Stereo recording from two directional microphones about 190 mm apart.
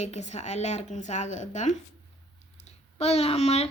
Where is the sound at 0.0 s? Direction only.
35° left (ahead or behind).